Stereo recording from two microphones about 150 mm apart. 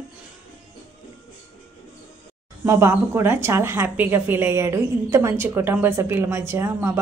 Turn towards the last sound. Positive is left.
turn(degrees=-15)  # may be behind; listen again after turning